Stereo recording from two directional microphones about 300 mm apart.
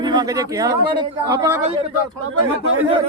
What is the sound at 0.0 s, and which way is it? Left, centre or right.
A man's voice, centre.